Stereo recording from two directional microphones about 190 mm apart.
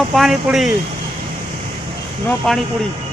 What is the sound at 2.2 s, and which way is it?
Speech, centre (ahead or behind).